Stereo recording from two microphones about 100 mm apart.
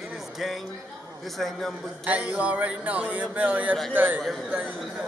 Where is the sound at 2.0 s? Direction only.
15° right (ahead or behind).